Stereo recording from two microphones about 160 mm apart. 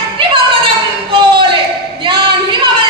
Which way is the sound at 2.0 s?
30° right (ahead or behind).